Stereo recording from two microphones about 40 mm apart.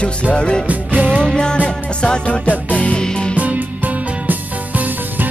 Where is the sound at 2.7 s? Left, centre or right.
Left.